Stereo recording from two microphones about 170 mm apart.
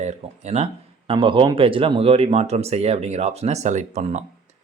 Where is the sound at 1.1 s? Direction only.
30° right (ahead or behind).